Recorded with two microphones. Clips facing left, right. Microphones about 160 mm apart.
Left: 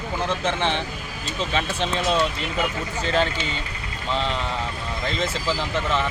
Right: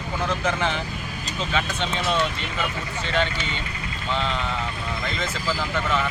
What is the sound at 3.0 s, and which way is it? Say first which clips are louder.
Speech: left 2 dB; 35° left (ahead or behind).